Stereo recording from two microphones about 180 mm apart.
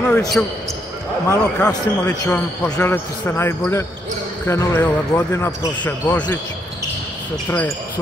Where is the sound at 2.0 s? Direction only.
10° left (ahead or behind).